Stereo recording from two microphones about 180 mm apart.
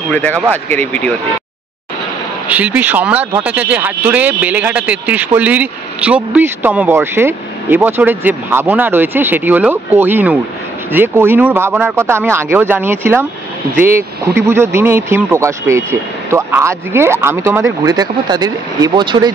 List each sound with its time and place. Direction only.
0.1 s speech: 10° left (ahead or behind)
2.4 s speech: 10° right (ahead or behind); by 19.3 s 25° right (ahead or behind)